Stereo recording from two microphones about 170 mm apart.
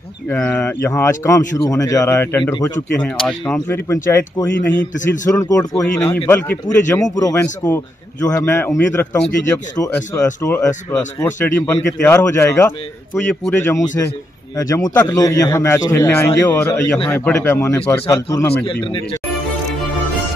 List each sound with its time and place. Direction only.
0.3 s speech: 10° left (ahead or behind)
4.9 s a man's voice: 50° left (ahead or behind)
6.1 s a man's voice: 10° left (ahead or behind)
18.7 s speech: 30° left (ahead or behind)